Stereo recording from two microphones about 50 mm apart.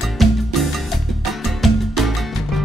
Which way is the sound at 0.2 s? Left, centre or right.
Centre.